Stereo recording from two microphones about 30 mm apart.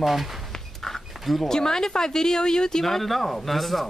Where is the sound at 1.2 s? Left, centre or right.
Centre.